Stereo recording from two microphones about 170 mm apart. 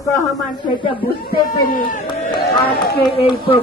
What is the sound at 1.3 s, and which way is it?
Speech, 55° left (ahead or behind).